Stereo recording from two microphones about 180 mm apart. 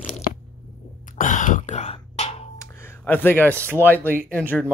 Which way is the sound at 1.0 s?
45° left (ahead or behind).